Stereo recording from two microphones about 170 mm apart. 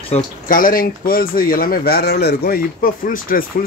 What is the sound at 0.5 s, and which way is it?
Speech, 55° left (ahead or behind).